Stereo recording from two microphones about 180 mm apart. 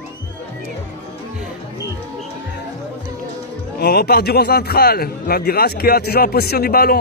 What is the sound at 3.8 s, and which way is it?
A man's voice, 60° left (ahead or behind).